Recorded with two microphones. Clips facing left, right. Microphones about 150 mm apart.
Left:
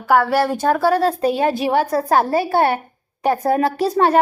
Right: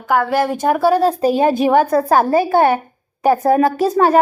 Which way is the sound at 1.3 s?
45° right (ahead or behind).